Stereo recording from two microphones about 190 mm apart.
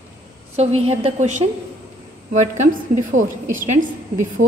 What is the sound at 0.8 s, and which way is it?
Speech, 35° right (ahead or behind).